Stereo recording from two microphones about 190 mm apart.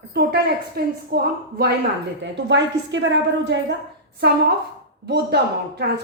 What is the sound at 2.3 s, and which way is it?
A woman's voice, 70° right (ahead or behind).